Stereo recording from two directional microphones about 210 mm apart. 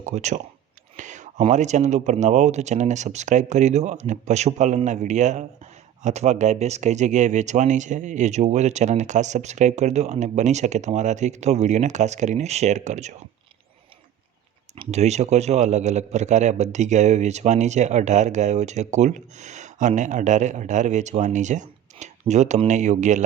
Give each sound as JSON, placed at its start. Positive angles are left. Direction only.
{"t": 0.0, "sound": "a man's voice", "side_deg": -35}
{"t": 14.8, "sound": "a man's voice", "side_deg": -30}